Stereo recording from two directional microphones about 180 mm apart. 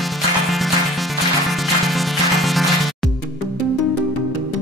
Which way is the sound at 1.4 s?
Centre (ahead or behind).